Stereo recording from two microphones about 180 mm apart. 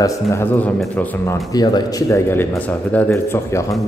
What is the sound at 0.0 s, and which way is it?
A man's voice, 15° left (ahead or behind).